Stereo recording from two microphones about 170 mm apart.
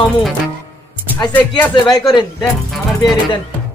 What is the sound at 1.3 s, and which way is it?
Speech, 10° left (ahead or behind).